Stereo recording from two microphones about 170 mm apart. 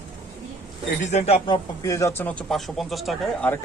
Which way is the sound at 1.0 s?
40° left (ahead or behind).